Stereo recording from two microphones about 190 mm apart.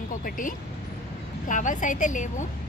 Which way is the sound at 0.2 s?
45° left (ahead or behind).